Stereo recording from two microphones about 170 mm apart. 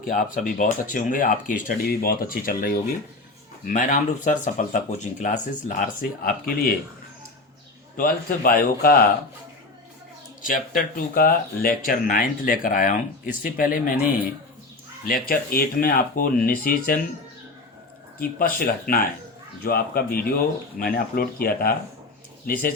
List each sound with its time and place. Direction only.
0.0 s speech: 50° left (ahead or behind)
7.9 s speech: 55° left (ahead or behind)
10.4 s speech: 55° left (ahead or behind)
15.0 s speech: 60° left (ahead or behind)
18.2 s speech: 60° left (ahead or behind)